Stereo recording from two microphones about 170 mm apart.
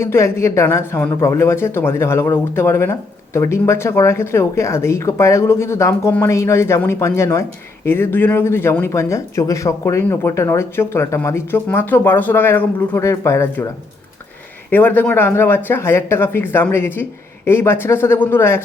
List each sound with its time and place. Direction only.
0.0 s speech: 15° left (ahead or behind)
14.7 s speech: 10° left (ahead or behind)